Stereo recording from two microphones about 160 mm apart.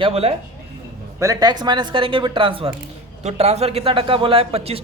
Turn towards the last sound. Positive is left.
turn(degrees=-40)  # may be behind; listen again after turning